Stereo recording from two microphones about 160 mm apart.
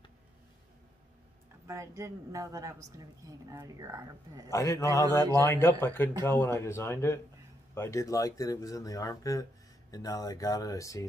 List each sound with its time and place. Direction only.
1.7 s a woman's voice: 20° right (ahead or behind)
4.5 s speech: 20° left (ahead or behind)